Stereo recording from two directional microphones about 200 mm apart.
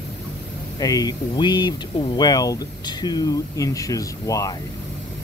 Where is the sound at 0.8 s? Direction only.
20° left (ahead or behind).